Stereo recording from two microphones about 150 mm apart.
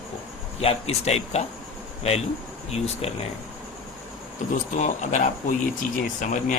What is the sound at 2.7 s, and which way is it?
Speech, 45° left (ahead or behind).